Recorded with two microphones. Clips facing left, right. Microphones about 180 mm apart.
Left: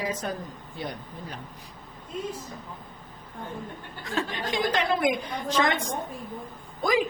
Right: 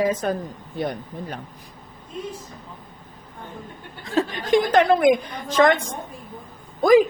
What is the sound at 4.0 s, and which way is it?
Speech, 35° right (ahead or behind).